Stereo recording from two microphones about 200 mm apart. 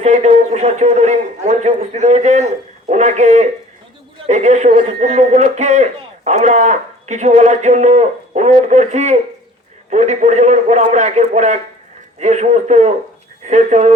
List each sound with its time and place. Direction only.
0.0 s a man's voice: 35° right (ahead or behind)